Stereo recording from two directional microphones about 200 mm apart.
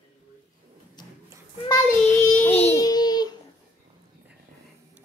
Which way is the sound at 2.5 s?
30° left (ahead or behind).